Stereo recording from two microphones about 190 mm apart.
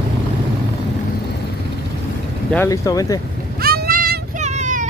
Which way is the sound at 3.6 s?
55° right (ahead or behind).